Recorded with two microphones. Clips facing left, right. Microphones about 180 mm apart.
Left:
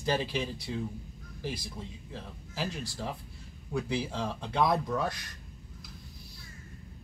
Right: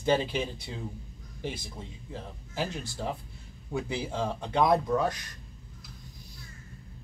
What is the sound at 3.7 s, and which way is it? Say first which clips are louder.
Speech: even; 20° right (ahead or behind).